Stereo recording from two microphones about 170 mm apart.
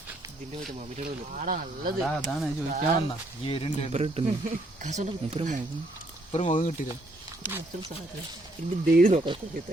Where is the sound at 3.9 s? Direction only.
40° right (ahead or behind).